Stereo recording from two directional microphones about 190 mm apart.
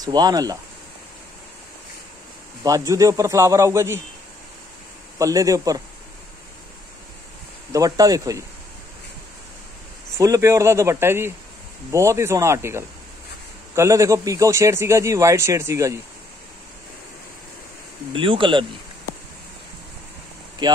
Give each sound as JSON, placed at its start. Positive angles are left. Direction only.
{"t": 0.0, "sound": "speech", "side_deg": -20}
{"t": 2.6, "sound": "speech", "side_deg": -15}
{"t": 5.2, "sound": "speech", "side_deg": -15}
{"t": 7.7, "sound": "speech", "side_deg": -20}
{"t": 10.1, "sound": "speech", "side_deg": -15}
{"t": 18.1, "sound": "speech", "side_deg": -25}